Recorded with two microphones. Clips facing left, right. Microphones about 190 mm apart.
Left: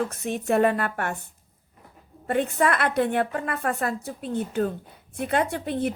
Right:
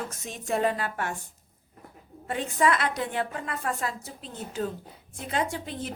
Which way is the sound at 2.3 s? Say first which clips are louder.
Left 3 dB; 60° left (ahead or behind).